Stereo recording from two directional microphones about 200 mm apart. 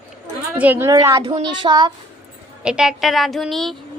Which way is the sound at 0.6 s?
10° right (ahead or behind).